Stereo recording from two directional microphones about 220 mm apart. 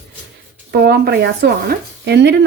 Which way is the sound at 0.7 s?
45° right (ahead or behind).